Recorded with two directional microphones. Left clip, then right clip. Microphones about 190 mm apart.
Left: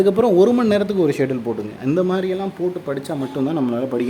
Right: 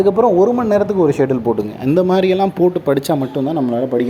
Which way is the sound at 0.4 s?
25° left (ahead or behind).